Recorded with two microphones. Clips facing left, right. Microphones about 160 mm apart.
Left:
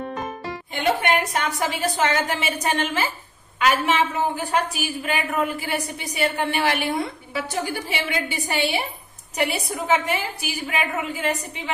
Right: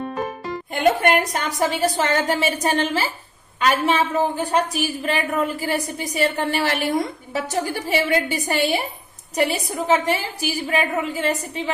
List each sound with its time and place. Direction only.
0.7 s a woman's voice: 40° right (ahead or behind)